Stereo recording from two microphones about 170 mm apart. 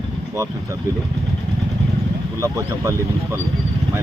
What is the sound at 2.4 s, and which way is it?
Speech, 15° right (ahead or behind).